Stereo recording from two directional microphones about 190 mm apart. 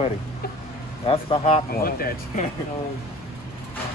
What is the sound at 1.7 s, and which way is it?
Speech, 50° left (ahead or behind).